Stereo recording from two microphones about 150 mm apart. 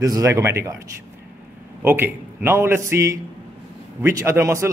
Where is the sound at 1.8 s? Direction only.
15° right (ahead or behind).